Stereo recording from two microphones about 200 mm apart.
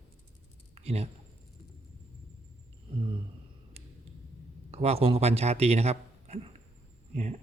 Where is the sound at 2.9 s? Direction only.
25° right (ahead or behind).